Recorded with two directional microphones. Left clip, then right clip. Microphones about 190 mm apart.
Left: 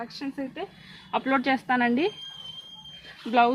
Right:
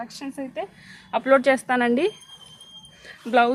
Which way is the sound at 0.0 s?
50° right (ahead or behind).